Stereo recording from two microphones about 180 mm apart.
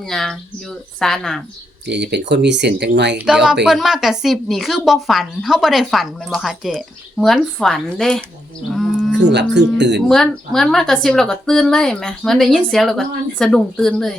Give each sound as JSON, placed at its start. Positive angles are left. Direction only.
{"t": 0.1, "sound": "a woman's voice", "side_deg": 0}
{"t": 1.9, "sound": "speech", "side_deg": -70}
{"t": 3.2, "sound": "a woman's voice", "side_deg": -5}
{"t": 8.7, "sound": "livestock", "side_deg": 0}
{"t": 9.1, "sound": "speech", "side_deg": -75}
{"t": 10.1, "sound": "a woman's voice", "side_deg": 0}